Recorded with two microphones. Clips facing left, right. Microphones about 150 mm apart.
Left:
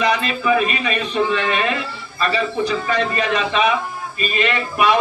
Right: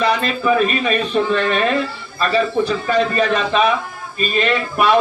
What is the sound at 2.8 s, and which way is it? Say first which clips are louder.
Speech: right 4 dB; 35° right (ahead or behind).